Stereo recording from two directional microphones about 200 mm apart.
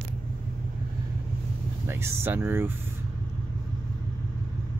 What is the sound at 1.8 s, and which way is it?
Speech, 10° right (ahead or behind).